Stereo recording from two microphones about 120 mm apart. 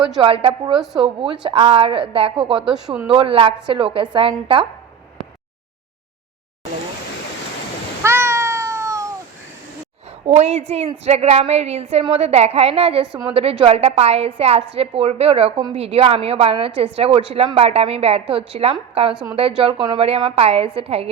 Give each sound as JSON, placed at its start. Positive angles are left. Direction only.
{"t": 0.2, "sound": "a woman's voice", "side_deg": -50}
{"t": 2.6, "sound": "speech", "side_deg": -5}
{"t": 3.1, "sound": "a woman's voice", "side_deg": -50}
{"t": 8.0, "sound": "cat", "side_deg": -20}
{"t": 10.2, "sound": "a woman's voice", "side_deg": -65}